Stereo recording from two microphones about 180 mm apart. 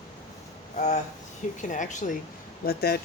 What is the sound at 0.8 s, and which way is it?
Speech, 40° left (ahead or behind).